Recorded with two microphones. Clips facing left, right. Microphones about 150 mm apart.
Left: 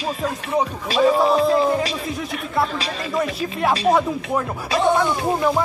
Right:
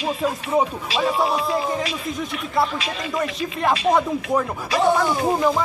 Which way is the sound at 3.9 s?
Centre (ahead or behind).